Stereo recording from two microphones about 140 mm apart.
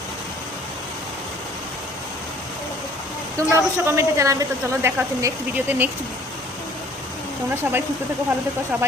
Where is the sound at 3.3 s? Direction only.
20° right (ahead or behind).